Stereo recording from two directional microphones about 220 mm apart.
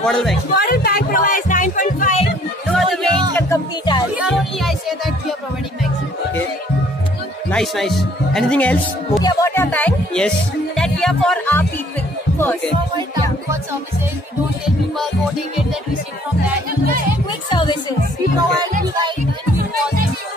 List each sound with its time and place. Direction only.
0.0 s speech: centre (ahead or behind)
0.6 s speech: 45° left (ahead or behind)
2.7 s music: 5° left (ahead or behind)
3.3 s music: 15° left (ahead or behind)
4.1 s music: centre (ahead or behind)
7.5 s speech: centre (ahead or behind)
9.2 s music: 15° left (ahead or behind)
10.8 s speech: 5° left (ahead or behind)
12.9 s music: 15° right (ahead or behind)
17.5 s speech: 20° left (ahead or behind)